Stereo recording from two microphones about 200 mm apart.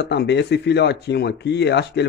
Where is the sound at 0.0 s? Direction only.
55° left (ahead or behind).